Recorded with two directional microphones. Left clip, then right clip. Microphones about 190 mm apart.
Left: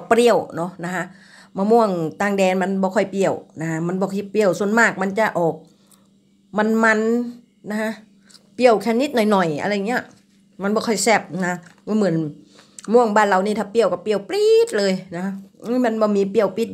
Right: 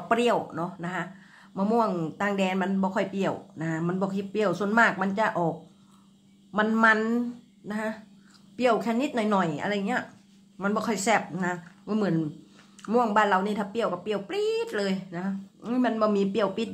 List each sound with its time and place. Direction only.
0.1 s speech: 35° left (ahead or behind)
6.5 s speech: 30° left (ahead or behind)